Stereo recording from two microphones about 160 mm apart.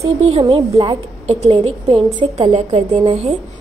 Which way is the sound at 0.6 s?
20° right (ahead or behind).